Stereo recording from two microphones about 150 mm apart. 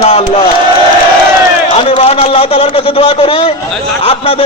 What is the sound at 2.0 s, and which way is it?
A man's voice, 40° left (ahead or behind).